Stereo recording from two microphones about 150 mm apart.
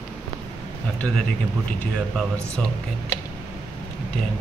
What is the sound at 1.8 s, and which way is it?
Speech, 5° left (ahead or behind).